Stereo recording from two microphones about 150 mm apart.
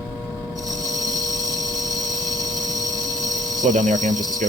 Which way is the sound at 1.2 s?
25° right (ahead or behind).